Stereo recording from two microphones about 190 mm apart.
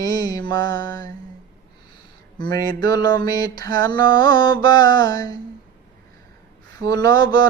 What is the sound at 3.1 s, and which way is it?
Mantra, 20° left (ahead or behind).